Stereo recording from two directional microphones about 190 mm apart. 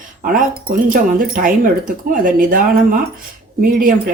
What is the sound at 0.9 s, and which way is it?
Speech, 45° right (ahead or behind).